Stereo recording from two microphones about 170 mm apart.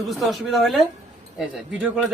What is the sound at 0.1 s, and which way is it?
Speech, centre (ahead or behind).